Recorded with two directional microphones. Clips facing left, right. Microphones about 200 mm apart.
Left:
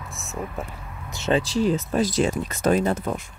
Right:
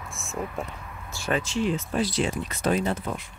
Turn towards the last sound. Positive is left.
turn(degrees=45)  # may be behind; listen again after turning